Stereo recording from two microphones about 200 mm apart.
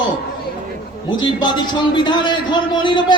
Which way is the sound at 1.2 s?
20° left (ahead or behind).